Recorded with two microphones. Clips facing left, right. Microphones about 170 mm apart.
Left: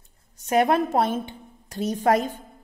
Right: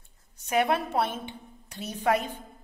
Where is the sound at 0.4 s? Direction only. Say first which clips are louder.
Left 5 dB; 45° left (ahead or behind).